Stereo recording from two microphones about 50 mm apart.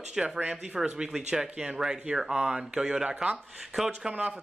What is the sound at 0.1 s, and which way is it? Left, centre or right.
Speech, centre.